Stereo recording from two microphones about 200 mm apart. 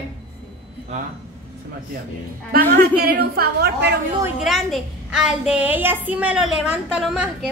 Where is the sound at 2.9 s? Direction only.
50° right (ahead or behind).